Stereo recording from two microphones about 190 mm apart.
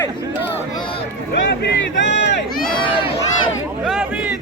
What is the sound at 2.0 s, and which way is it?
Run, 70° left (ahead or behind).